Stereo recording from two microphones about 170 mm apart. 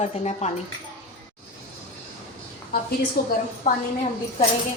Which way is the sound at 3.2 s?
65° left (ahead or behind).